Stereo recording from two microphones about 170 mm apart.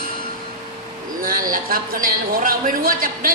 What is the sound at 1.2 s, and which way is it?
A woman's voice, 55° right (ahead or behind).